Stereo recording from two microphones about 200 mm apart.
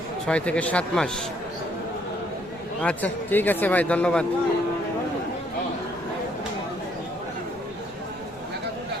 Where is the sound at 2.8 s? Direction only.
10° left (ahead or behind).